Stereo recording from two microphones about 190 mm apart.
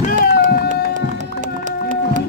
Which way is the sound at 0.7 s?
40° right (ahead or behind).